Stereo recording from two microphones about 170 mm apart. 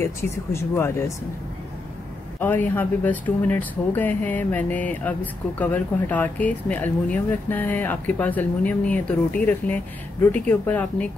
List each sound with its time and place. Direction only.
0.0 s speech: 15° left (ahead or behind)
2.4 s speech: 10° left (ahead or behind)